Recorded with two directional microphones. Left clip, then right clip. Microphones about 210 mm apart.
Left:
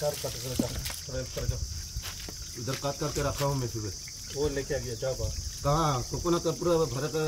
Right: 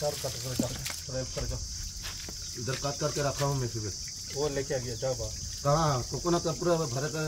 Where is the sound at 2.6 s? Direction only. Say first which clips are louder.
Even; 50° left (ahead or behind).